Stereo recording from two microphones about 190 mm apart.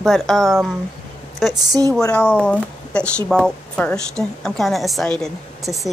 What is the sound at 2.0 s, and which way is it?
A woman's voice, 5° left (ahead or behind).